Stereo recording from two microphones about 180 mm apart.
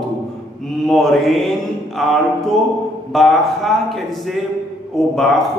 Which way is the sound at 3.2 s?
Centre (ahead or behind).